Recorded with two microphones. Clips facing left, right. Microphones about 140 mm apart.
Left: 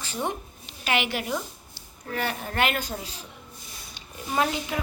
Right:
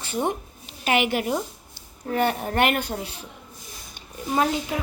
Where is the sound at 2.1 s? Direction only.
50° right (ahead or behind).